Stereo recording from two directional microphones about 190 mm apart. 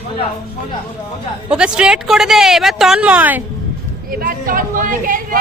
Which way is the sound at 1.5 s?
5° right (ahead or behind).